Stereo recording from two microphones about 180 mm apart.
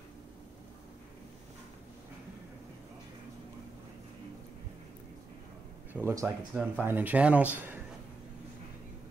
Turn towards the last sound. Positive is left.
turn(degrees=-10)  # may be behind; listen again after turning